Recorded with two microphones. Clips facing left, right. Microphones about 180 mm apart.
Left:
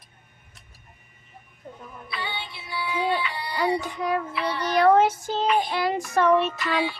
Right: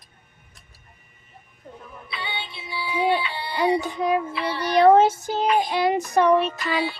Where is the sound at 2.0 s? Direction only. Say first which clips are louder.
Even; 25° right (ahead or behind).